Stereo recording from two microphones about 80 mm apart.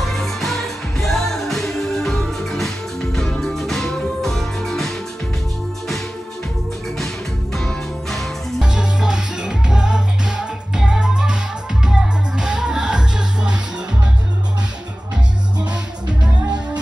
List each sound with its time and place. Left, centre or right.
0.0 s music: centre
7.5 s music: centre
8.7 s music: centre